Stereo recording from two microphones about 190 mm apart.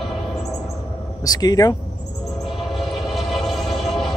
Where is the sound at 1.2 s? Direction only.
20° left (ahead or behind).